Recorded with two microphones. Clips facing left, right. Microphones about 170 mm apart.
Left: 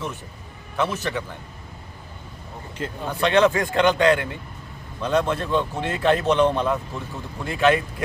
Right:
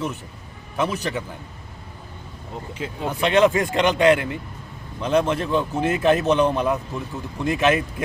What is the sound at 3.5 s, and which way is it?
A man's voice, 20° right (ahead or behind).